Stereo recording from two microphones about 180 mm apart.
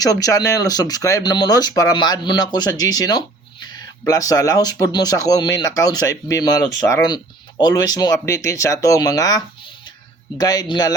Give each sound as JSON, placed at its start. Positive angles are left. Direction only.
{"t": 0.0, "sound": "speech", "side_deg": 20}